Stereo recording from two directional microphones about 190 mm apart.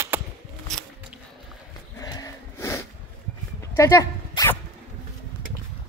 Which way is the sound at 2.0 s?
20° left (ahead or behind).